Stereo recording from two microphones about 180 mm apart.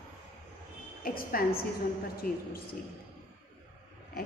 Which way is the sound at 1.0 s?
55° left (ahead or behind).